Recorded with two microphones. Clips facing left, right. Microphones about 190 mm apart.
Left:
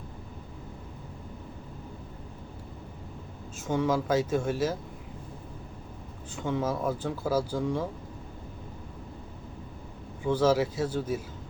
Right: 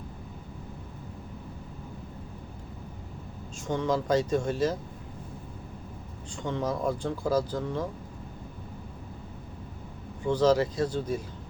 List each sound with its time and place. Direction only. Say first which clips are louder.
3.7 s speech: even; 5° left (ahead or behind)
6.3 s speech: left 1 dB; 5° left (ahead or behind)
10.2 s speech: right 1 dB; 5° left (ahead or behind)